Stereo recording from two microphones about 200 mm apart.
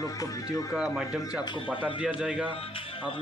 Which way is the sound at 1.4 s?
25° left (ahead or behind).